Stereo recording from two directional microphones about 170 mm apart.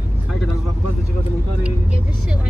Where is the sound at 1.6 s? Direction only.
5° right (ahead or behind).